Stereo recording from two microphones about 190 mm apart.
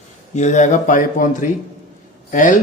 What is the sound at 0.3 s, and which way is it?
Speech, 40° left (ahead or behind).